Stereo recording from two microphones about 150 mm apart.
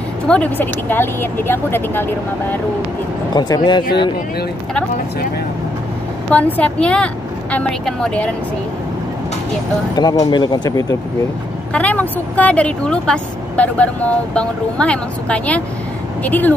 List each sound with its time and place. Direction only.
0.3 s speech: 10° left (ahead or behind)
3.3 s speech: 25° left (ahead or behind)
6.3 s speech: 10° left (ahead or behind)
9.9 s speech: 25° left (ahead or behind)
11.7 s speech: 10° left (ahead or behind)